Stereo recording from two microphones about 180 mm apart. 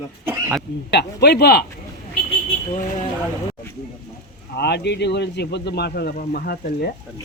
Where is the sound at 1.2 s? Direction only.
65° left (ahead or behind).